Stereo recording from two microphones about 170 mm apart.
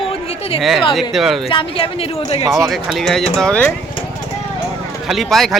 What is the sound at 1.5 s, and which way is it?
Speech, 30° left (ahead or behind).